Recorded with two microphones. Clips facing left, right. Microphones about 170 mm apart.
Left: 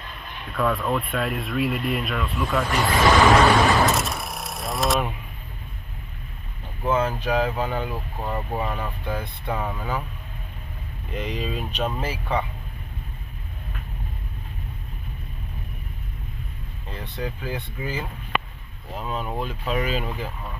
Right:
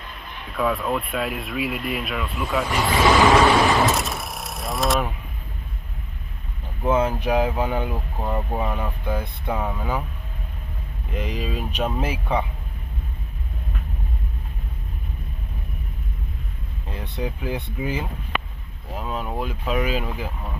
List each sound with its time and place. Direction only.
0.5 s speech: centre (ahead or behind)
6.8 s speech: 15° right (ahead or behind)
11.1 s speech: 5° right (ahead or behind)
16.9 s speech: 15° right (ahead or behind)
18.9 s speech: 5° right (ahead or behind)